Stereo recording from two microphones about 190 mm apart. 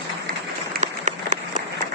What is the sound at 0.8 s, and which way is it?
Applause, 40° right (ahead or behind).